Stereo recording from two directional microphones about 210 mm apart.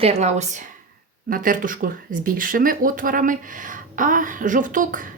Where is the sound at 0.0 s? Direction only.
30° right (ahead or behind).